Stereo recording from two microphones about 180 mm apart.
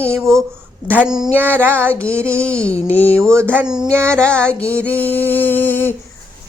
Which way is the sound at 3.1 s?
15° right (ahead or behind).